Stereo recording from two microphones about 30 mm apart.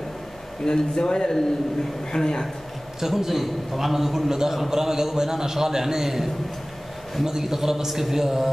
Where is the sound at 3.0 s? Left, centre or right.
Centre.